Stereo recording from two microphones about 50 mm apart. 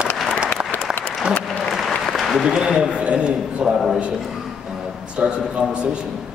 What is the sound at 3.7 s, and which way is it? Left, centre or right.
Speech, centre.